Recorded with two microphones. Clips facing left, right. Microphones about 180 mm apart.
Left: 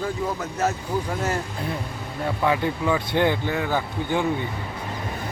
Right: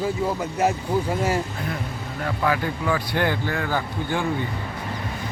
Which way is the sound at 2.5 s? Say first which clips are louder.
Left 1 dB; 20° left (ahead or behind).